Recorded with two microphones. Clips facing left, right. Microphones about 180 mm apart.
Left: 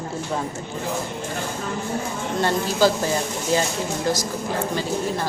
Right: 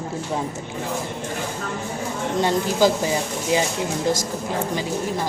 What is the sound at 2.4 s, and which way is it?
Speech, 15° right (ahead or behind).